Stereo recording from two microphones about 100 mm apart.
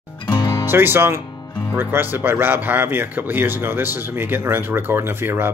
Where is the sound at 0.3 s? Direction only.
50° left (ahead or behind).